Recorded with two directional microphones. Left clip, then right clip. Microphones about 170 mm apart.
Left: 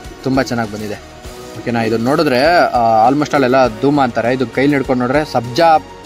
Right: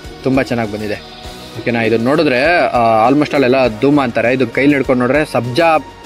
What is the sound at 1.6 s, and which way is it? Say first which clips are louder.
Speech: right 2 dB; 15° right (ahead or behind).